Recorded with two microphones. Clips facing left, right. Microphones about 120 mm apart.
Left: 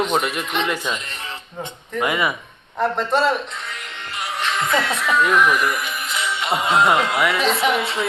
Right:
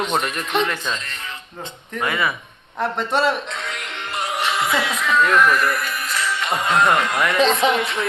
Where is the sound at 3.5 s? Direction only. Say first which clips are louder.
Right 3 dB; 85° right.